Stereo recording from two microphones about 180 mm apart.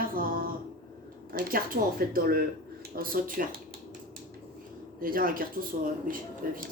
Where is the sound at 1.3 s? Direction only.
50° right (ahead or behind).